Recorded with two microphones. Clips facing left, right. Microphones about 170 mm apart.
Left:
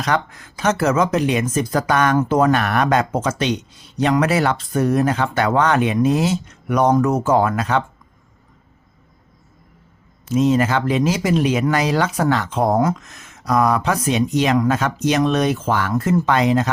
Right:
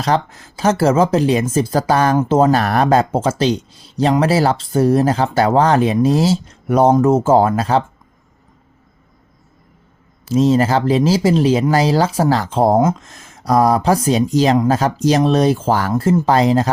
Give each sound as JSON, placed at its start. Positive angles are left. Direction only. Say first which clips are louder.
{"t": 0.0, "sound": "speech", "louder": "right 3 dB", "side_deg": -30}
{"t": 10.2, "sound": "speech", "louder": "right 3 dB", "side_deg": -35}